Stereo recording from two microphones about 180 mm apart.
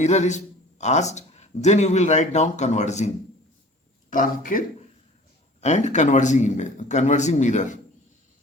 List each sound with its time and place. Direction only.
0.0 s a man's voice: 40° left (ahead or behind)
4.1 s a man's voice: 50° left (ahead or behind)